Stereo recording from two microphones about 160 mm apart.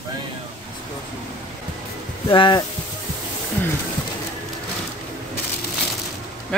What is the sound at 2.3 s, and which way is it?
Speech, 30° left (ahead or behind).